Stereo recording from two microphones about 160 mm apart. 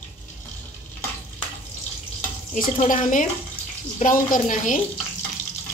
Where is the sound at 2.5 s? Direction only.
55° left (ahead or behind).